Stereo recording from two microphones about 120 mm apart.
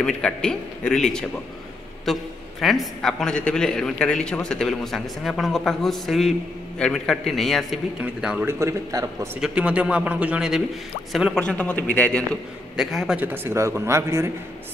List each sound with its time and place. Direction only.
0.0 s a man's voice: 5° left (ahead or behind)
8.5 s speech: 25° right (ahead or behind)
9.4 s a man's voice: 10° right (ahead or behind)
11.4 s a man's voice: 10° left (ahead or behind)
12.7 s a man's voice: 5° right (ahead or behind)
13.2 s speech: 15° right (ahead or behind)